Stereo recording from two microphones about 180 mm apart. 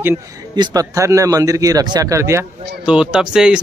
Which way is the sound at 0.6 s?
20° right (ahead or behind).